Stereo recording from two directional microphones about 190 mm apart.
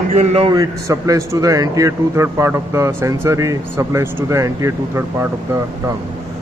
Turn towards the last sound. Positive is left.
turn(degrees=-15)  # may be behind; listen again after turning